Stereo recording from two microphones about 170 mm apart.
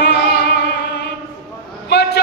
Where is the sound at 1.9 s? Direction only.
90° left.